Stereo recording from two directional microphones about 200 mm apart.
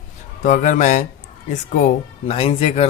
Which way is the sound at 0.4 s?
40° left (ahead or behind).